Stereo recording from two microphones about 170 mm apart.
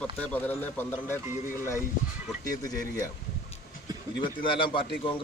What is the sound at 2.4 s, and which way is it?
Speech, 20° left (ahead or behind).